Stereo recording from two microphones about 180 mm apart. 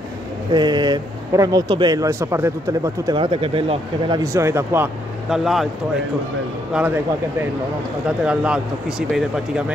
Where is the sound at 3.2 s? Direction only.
30° right (ahead or behind); by 4.9 s 15° right (ahead or behind).